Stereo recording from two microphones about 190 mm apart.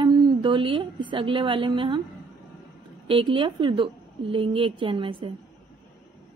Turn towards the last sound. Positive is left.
turn(degrees=-25)  # may be behind; listen again after turning